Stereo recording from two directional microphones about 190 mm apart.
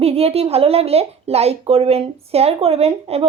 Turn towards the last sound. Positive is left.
turn(degrees=-30)  # may be behind; listen again after turning